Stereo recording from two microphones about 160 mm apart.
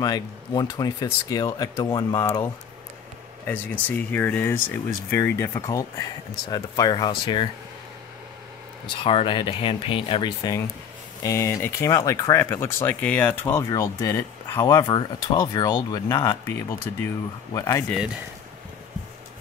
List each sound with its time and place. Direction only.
0.0 s speech: 25° left (ahead or behind)
8.9 s speech: 35° left (ahead or behind); by 14.9 s 15° left (ahead or behind)
14.9 s speech: 30° left (ahead or behind)
17.8 s speech: 5° right (ahead or behind)